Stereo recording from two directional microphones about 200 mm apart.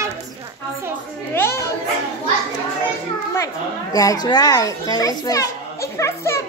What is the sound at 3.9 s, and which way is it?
A child's voice, 20° left (ahead or behind).